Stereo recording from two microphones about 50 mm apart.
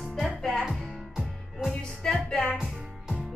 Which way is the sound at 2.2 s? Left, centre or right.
Centre.